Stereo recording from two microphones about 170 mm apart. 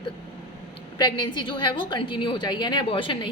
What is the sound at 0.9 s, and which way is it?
A woman's voice, 25° left (ahead or behind).